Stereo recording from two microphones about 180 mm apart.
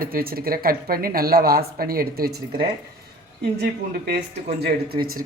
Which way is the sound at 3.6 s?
60° right (ahead or behind).